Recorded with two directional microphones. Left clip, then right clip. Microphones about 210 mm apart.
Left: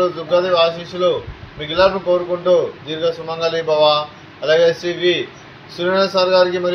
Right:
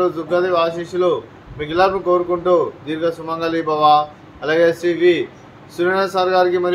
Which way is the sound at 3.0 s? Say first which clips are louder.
Left 2 dB; 20° right (ahead or behind).